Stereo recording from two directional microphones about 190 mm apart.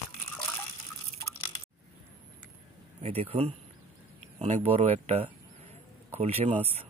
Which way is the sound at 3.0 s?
30° right (ahead or behind).